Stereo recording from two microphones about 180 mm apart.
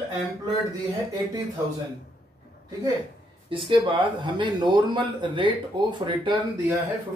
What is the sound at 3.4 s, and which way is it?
Speech, 30° right (ahead or behind).